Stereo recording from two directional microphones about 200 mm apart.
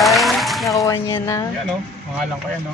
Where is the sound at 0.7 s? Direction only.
15° left (ahead or behind).